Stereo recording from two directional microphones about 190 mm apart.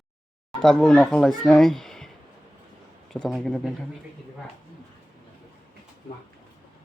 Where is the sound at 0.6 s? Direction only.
Centre (ahead or behind).